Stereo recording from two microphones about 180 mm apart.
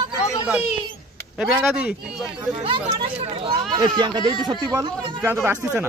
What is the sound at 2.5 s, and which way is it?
Speech, 30° right (ahead or behind).